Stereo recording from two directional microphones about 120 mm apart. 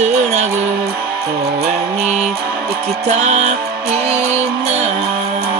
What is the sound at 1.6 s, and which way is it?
Mantra, 60° right (ahead or behind).